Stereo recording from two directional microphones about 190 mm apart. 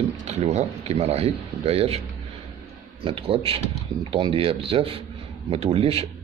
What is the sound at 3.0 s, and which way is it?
Speech, 30° right (ahead or behind).